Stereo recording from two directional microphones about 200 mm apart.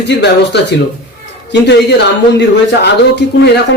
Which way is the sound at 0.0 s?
60° left (ahead or behind).